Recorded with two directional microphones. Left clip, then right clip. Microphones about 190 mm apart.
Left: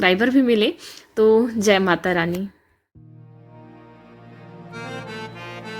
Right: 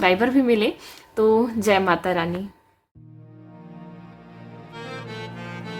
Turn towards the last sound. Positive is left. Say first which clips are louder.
# left 1 dB
turn(degrees=0)  # may be behind; listen again after turning